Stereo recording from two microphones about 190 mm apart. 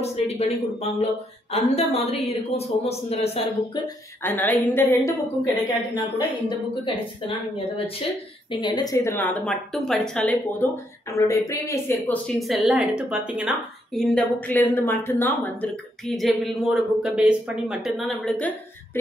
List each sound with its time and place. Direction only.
0.0 s a woman's voice: 35° left (ahead or behind)
4.2 s a woman's voice: 10° left (ahead or behind)
6.8 s a woman's voice: 30° left (ahead or behind); by 12.2 s 15° left (ahead or behind)
12.4 s a woman's voice: centre (ahead or behind)